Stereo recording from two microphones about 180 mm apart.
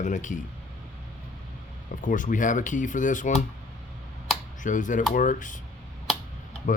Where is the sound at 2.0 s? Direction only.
45° left (ahead or behind).